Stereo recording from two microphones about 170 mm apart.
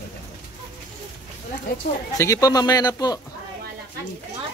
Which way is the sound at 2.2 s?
20° left (ahead or behind).